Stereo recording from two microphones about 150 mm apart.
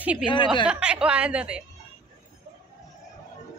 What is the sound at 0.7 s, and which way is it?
Speech, 5° right (ahead or behind).